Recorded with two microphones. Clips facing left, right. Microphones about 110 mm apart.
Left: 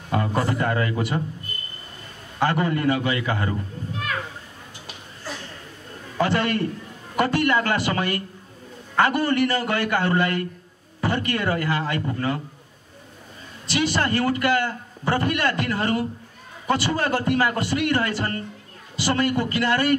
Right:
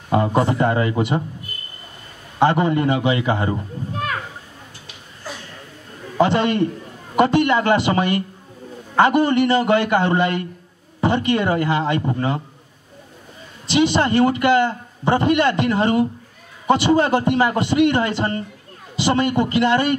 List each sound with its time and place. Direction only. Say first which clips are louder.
0.1 s a man's voice: right 6 dB; 25° right (ahead or behind)
2.3 s a man's voice: right 6 dB; 20° right (ahead or behind)
6.1 s a man's voice: right 5 dB; 20° right (ahead or behind)
13.7 s a man's voice: right 6 dB; 20° right (ahead or behind)